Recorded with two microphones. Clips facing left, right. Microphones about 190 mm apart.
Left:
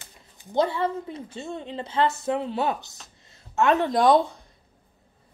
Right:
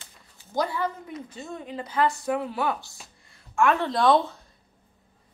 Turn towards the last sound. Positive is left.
turn(degrees=20)  # may be behind; listen again after turning